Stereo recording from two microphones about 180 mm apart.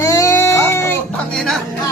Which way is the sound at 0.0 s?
15° left (ahead or behind).